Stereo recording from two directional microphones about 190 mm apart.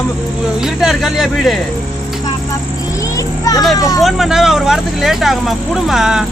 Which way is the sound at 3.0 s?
15° left (ahead or behind).